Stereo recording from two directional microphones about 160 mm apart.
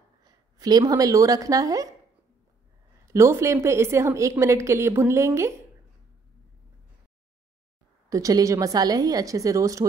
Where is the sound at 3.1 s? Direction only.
15° right (ahead or behind).